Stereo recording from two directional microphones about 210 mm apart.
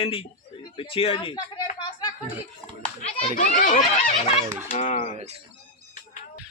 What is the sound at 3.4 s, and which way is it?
Speech, 40° left (ahead or behind).